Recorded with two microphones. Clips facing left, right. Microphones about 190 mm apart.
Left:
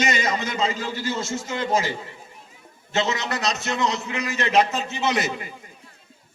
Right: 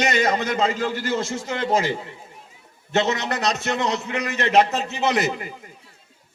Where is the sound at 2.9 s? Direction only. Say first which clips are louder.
Right 3 dB; 55° right (ahead or behind).